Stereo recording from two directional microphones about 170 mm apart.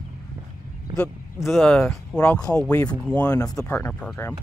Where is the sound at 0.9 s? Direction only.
5° left (ahead or behind).